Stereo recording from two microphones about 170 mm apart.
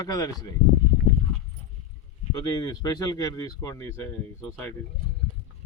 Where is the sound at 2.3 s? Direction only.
20° left (ahead or behind).